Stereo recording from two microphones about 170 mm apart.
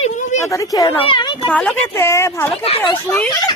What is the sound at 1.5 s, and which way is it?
Speech, 5° left (ahead or behind).